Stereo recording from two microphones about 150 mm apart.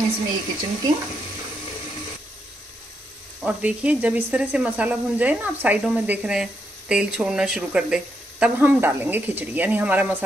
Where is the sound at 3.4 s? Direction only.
10° right (ahead or behind).